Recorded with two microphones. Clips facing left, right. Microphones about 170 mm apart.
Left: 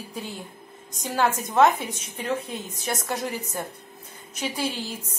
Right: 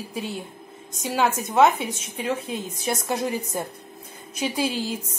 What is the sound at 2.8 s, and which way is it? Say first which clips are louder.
Speech: right 3 dB; 15° right (ahead or behind).